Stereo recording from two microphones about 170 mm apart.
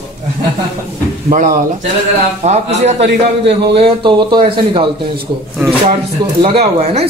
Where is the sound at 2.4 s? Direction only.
40° right (ahead or behind).